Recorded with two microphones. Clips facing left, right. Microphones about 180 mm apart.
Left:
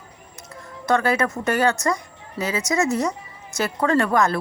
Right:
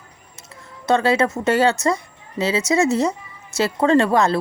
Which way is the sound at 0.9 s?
25° right (ahead or behind).